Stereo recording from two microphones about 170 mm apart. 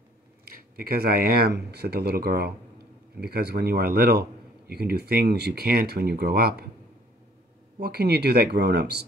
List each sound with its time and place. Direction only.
0.5 s speech: 60° right (ahead or behind)
7.8 s speech: 70° right (ahead or behind)